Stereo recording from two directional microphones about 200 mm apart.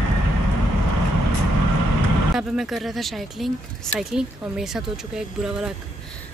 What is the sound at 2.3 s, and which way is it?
A woman's voice, centre (ahead or behind).